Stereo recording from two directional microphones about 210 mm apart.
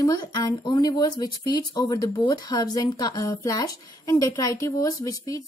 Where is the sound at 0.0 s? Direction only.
15° left (ahead or behind).